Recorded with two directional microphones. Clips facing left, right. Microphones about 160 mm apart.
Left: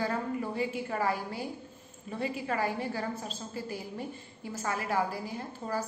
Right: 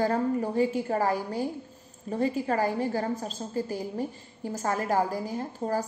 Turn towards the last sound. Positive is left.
turn(degrees=-40)  # may be behind; listen again after turning